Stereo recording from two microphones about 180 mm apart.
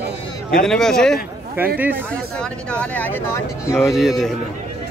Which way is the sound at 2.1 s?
5° left (ahead or behind).